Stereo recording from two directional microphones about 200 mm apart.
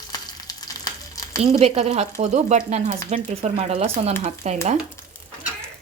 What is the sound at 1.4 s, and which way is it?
Speech, 30° right (ahead or behind).